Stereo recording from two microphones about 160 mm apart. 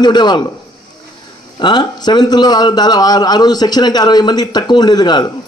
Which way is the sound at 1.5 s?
30° left (ahead or behind).